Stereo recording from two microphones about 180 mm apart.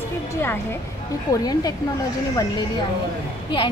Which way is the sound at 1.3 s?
20° left (ahead or behind).